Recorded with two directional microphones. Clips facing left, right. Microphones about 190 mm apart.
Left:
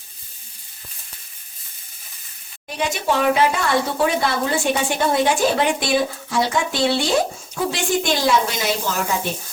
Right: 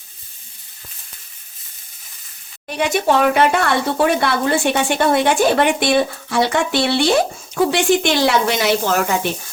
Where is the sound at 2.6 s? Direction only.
60° right (ahead or behind).